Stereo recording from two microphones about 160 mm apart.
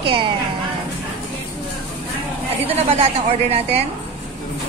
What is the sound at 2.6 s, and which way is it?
Speech, 40° right (ahead or behind).